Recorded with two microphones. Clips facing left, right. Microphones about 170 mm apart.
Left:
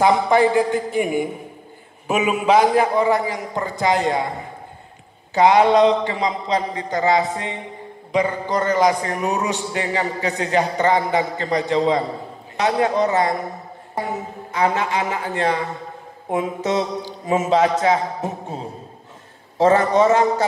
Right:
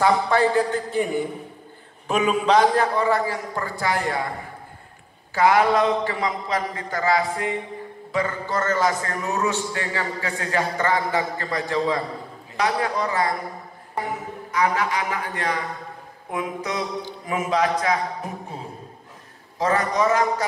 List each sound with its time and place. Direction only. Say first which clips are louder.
0.0 s a man's voice: left 4 dB; 15° left (ahead or behind)
5.3 s a man's voice: left 4 dB; 25° left (ahead or behind)
19.6 s a man's voice: left 6 dB; 25° left (ahead or behind)